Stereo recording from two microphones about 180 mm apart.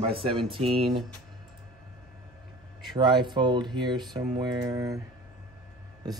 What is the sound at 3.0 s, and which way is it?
A man's voice, 25° right (ahead or behind).